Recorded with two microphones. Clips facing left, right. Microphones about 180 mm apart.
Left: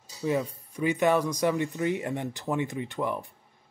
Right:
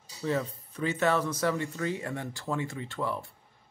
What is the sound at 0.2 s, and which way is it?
Speech, 15° left (ahead or behind).